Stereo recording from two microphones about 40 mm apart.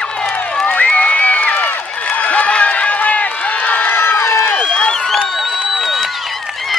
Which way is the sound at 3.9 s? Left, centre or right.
Left.